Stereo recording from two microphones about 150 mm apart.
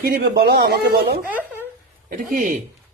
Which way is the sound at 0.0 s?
90° right.